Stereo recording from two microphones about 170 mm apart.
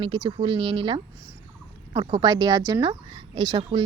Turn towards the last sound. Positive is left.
turn(degrees=-25)  # may be behind; listen again after turning